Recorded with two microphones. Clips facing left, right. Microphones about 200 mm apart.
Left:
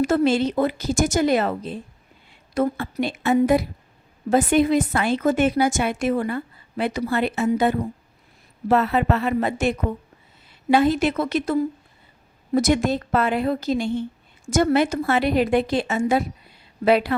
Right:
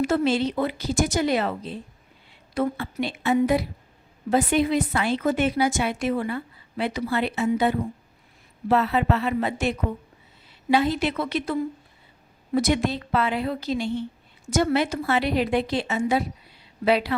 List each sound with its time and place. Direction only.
0.0 s a woman's voice: 45° left (ahead or behind)
12.5 s a woman's voice: 45° left (ahead or behind)